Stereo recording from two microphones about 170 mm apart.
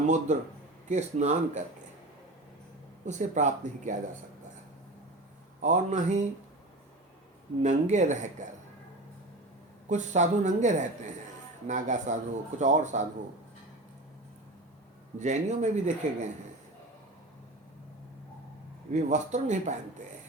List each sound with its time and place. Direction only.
0.0 s a man's voice: 45° right (ahead or behind)
3.1 s a man's voice: 45° right (ahead or behind)
5.6 s a man's voice: 45° right (ahead or behind)
7.6 s a man's voice: 45° right (ahead or behind)
9.9 s a man's voice: 45° right (ahead or behind)
15.2 s a man's voice: 45° right (ahead or behind)
18.9 s a man's voice: 45° right (ahead or behind)